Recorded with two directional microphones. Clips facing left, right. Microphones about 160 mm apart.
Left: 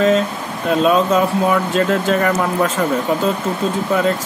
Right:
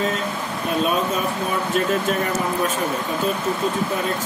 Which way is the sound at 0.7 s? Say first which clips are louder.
Left 7 dB; 90° left.